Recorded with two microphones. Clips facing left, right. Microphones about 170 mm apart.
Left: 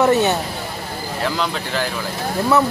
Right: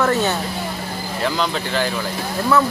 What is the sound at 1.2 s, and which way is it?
Speech, centre (ahead or behind).